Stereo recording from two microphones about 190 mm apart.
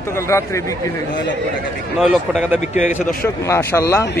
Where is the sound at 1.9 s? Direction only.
Centre (ahead or behind).